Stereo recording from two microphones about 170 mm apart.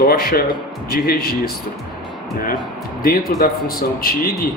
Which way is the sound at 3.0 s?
60° left (ahead or behind).